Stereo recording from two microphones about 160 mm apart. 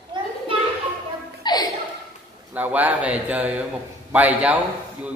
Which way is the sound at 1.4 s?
25° left (ahead or behind).